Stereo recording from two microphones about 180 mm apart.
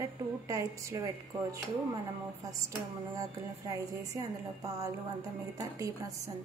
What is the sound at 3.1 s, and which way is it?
A woman's voice, 20° right (ahead or behind).